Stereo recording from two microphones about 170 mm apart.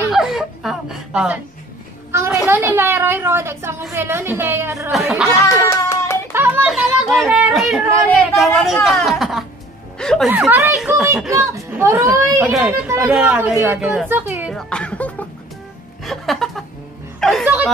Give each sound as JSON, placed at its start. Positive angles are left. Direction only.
{"t": 0.1, "sound": "chuckle", "side_deg": 0}
{"t": 2.1, "sound": "a woman's voice", "side_deg": -15}
{"t": 4.9, "sound": "speech", "side_deg": -5}
{"t": 5.5, "sound": "hands", "side_deg": 15}
{"t": 6.3, "sound": "a sound", "side_deg": -15}
{"t": 6.7, "sound": "speech", "side_deg": 0}
{"t": 10.3, "sound": "a woman's voice", "side_deg": -10}
{"t": 14.5, "sound": "music", "side_deg": 5}
{"t": 16.0, "sound": "a woman's voice", "side_deg": 0}